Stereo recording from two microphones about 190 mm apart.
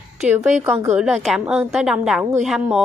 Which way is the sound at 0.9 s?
5° right (ahead or behind).